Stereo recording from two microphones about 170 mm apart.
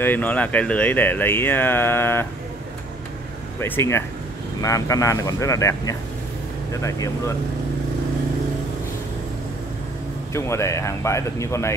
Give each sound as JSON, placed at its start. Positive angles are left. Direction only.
{"t": 0.0, "sound": "speech", "side_deg": 10}
{"t": 3.6, "sound": "speech", "side_deg": 15}
{"t": 10.3, "sound": "speech", "side_deg": 15}